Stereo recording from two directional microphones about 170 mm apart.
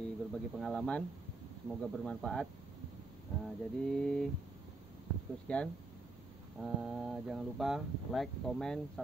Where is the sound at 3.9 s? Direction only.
5° left (ahead or behind).